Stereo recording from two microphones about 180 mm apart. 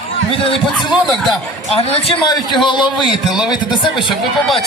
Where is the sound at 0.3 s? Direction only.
30° left (ahead or behind).